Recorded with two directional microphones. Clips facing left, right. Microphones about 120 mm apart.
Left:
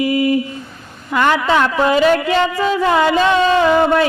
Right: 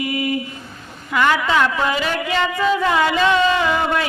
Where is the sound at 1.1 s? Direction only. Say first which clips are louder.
Left 3 dB; 30° left (ahead or behind).